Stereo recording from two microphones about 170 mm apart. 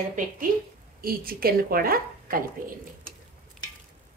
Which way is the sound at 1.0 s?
60° right (ahead or behind).